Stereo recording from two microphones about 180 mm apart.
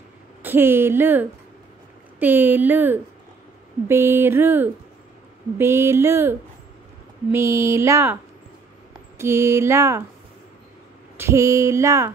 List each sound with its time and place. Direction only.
0.4 s speech: 10° right (ahead or behind)
9.2 s speech: 15° right (ahead or behind)
11.1 s speech: 15° right (ahead or behind)